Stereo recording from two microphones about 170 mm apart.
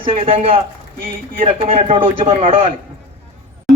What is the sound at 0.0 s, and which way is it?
Speech, 35° right (ahead or behind).